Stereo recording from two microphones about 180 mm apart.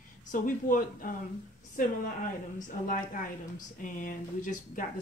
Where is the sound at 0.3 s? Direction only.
45° left (ahead or behind).